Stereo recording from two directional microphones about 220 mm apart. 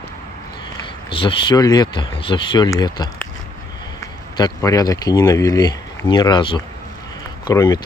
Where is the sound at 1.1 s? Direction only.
20° left (ahead or behind).